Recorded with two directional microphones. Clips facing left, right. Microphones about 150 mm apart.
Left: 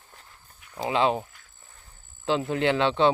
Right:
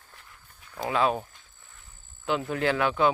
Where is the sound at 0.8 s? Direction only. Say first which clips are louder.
Left 2 dB; 25° left (ahead or behind).